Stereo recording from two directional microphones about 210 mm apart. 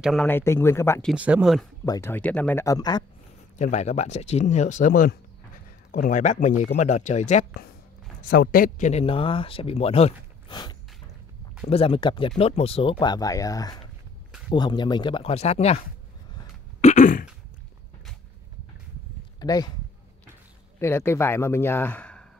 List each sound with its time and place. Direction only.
0.0 s speech: centre (ahead or behind)
0.3 s a man's voice: 10° left (ahead or behind)
1.0 s speech: 5° right (ahead or behind)
1.9 s a man's voice: 10° left (ahead or behind)
3.5 s speech: 35° left (ahead or behind)
8.3 s a man's voice: 45° left (ahead or behind); by 15.8 s 30° left (ahead or behind)
16.8 s throat clearing: 35° left (ahead or behind)
19.4 s speech: 20° left (ahead or behind)
20.8 s a man's voice: 10° left (ahead or behind)